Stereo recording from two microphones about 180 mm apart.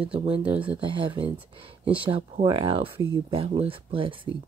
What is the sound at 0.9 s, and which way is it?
Speech, 30° right (ahead or behind).